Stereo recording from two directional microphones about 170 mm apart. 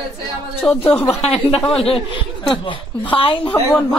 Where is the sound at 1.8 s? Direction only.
35° left (ahead or behind).